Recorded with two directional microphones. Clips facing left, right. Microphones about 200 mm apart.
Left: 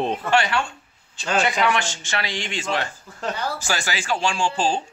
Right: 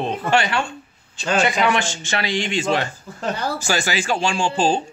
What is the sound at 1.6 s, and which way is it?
Speech, 20° right (ahead or behind).